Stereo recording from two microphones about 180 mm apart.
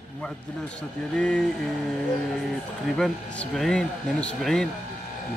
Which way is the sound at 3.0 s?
Centre (ahead or behind).